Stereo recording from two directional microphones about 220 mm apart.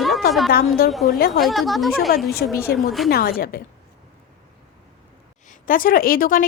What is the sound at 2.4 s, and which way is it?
A woman's voice, 45° left (ahead or behind).